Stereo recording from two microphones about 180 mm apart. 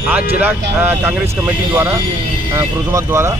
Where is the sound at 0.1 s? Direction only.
10° right (ahead or behind).